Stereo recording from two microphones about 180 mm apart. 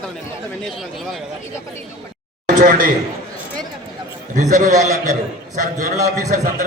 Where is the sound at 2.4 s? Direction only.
50° right (ahead or behind).